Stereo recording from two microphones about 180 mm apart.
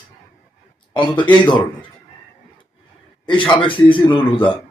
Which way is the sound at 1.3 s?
25° left (ahead or behind).